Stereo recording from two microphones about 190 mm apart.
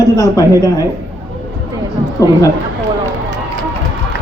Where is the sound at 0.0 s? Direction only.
15° left (ahead or behind).